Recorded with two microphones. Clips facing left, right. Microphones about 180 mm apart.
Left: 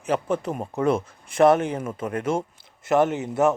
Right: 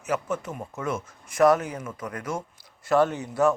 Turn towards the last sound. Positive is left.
turn(degrees=20)  # may be behind; listen again after turning